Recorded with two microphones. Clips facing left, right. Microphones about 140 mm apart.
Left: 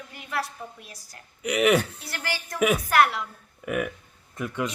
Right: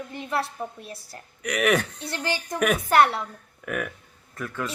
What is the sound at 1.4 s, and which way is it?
Speech, 10° left (ahead or behind).